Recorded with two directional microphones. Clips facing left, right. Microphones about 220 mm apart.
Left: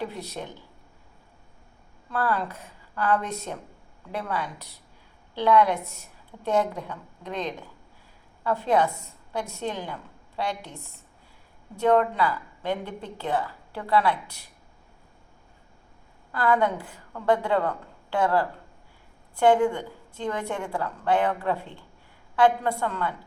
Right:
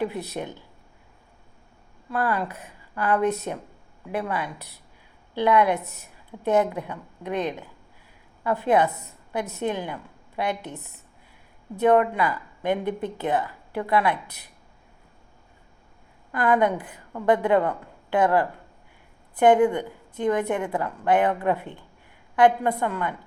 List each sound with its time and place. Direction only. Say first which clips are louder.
0.4 s a woman's voice: right 4 dB; 15° right (ahead or behind)
2.0 s a woman's voice: right 1 dB; 10° right (ahead or behind)
5.7 s a woman's voice: right 3 dB; 15° left (ahead or behind)
6.4 s a woman's voice: right 3 dB; 10° right (ahead or behind)
11.8 s a woman's voice: right 2 dB; 15° right (ahead or behind)
16.3 s a woman's voice: right 2 dB; 15° right (ahead or behind)